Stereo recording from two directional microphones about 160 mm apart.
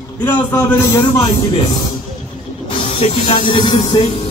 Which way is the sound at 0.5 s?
15° left (ahead or behind).